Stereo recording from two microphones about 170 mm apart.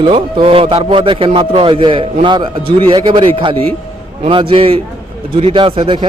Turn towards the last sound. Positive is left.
turn(degrees=-30)  # may be behind; listen again after turning